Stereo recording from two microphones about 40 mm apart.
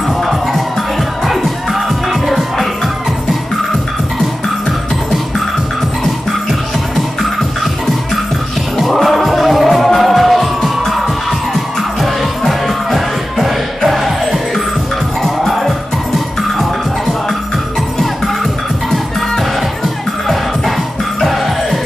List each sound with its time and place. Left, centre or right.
0.2 s music: centre
8.7 s music: centre
18.9 s music: centre